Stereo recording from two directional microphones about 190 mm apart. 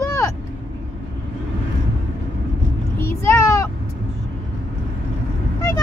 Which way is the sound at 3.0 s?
15° left (ahead or behind).